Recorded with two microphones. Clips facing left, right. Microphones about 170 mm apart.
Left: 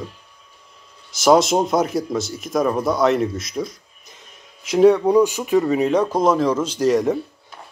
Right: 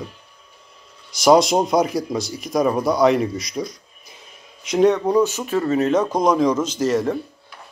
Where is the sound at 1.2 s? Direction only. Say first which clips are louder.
Even; centre (ahead or behind).